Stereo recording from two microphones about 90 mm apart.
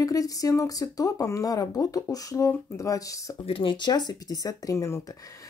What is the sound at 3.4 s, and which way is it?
Speech, 80° left.